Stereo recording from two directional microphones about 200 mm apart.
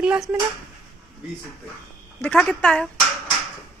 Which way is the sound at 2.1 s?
5° left (ahead or behind).